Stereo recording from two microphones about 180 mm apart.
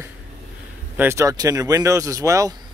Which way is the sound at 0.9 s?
15° right (ahead or behind).